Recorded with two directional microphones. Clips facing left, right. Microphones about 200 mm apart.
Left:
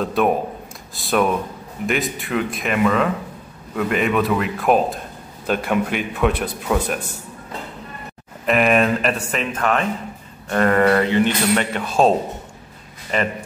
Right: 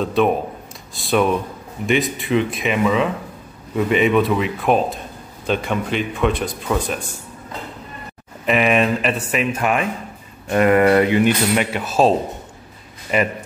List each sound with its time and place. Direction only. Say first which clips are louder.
0.0 s a man's voice: right 1 dB; centre (ahead or behind)
8.5 s speech: even; centre (ahead or behind)
13.1 s speech: right 3 dB; 10° right (ahead or behind)